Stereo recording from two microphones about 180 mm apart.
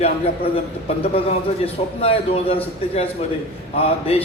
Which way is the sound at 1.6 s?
35° left (ahead or behind).